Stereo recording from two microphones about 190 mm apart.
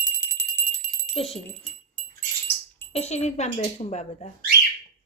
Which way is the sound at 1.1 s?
30° left (ahead or behind).